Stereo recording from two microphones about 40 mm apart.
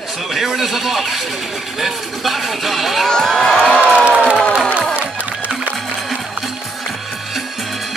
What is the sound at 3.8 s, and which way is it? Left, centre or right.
Crowd, right.